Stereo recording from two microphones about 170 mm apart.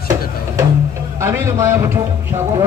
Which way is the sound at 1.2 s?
15° right (ahead or behind).